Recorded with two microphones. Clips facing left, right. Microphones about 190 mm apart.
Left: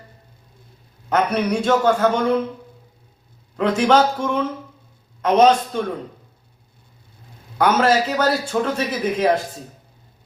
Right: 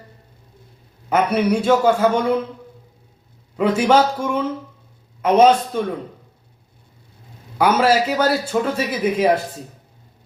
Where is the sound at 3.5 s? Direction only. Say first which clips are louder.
Right 1 dB; 10° right (ahead or behind).